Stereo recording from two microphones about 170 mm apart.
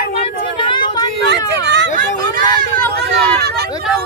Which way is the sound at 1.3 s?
90° right.